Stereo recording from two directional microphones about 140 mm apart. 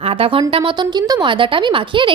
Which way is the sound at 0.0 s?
40° right (ahead or behind).